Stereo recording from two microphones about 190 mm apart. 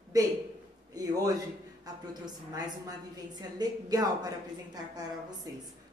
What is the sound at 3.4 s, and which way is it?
Speech, 20° right (ahead or behind).